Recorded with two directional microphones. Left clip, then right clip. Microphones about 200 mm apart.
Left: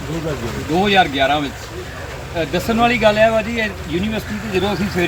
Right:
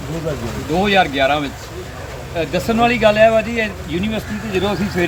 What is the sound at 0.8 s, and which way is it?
Speech, 5° left (ahead or behind).